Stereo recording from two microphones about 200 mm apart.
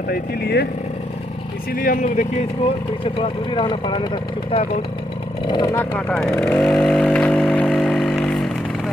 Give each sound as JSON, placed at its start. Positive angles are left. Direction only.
{"t": 0.1, "sound": "speech", "side_deg": 55}
{"t": 1.7, "sound": "speech", "side_deg": 45}
{"t": 3.0, "sound": "speech", "side_deg": 25}
{"t": 5.9, "sound": "vehicle", "side_deg": 5}